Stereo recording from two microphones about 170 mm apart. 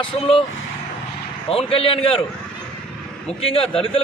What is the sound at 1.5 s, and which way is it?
Speech, 35° left (ahead or behind).